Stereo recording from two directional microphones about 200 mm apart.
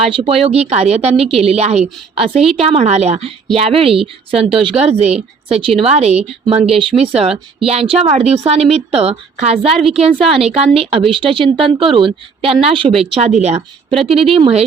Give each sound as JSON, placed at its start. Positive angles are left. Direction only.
{"t": 0.0, "sound": "a woman's voice", "side_deg": -30}